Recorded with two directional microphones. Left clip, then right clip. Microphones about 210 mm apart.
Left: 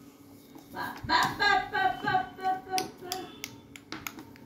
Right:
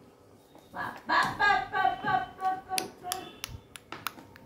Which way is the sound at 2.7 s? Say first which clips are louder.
Left 2 dB; 20° right (ahead or behind).